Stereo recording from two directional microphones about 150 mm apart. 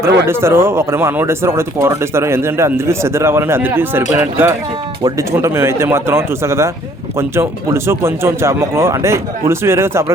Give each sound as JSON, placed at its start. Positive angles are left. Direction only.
{"t": 0.0, "sound": "speech", "side_deg": -15}